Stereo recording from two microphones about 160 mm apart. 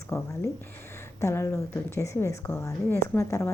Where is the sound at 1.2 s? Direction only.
15° left (ahead or behind).